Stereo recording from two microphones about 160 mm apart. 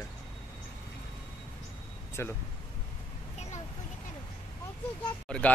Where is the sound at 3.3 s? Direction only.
45° left (ahead or behind).